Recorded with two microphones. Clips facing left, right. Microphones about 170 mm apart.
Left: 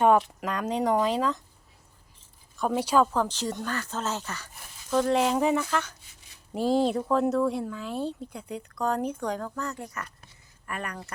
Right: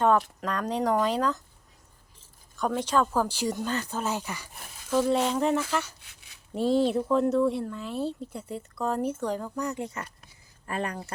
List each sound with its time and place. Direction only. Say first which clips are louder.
0.0 s speech: left 2 dB; 10° left (ahead or behind)
2.6 s speech: left 2 dB; 10° left (ahead or behind)
3.1 s speech: right 1 dB; 10° right (ahead or behind)
4.9 s speech: left 1 dB; centre (ahead or behind)
9.6 s speech: right 3 dB; 20° right (ahead or behind)